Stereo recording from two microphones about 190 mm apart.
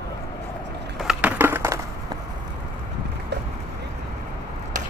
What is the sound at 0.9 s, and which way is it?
Crushing, 5° right (ahead or behind).